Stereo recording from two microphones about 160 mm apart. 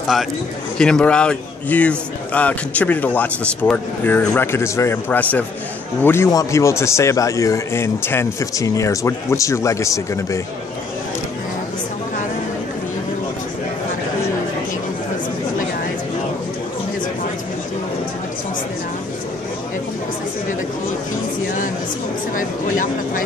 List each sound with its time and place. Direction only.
0.7 s a man's voice: 5° left (ahead or behind)
22.4 s vehicle: 55° left (ahead or behind)